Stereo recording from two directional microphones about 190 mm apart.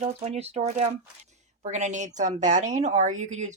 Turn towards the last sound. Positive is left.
turn(degrees=-40)  # may be behind; listen again after turning